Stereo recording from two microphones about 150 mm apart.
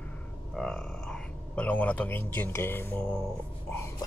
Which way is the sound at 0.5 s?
5° left (ahead or behind).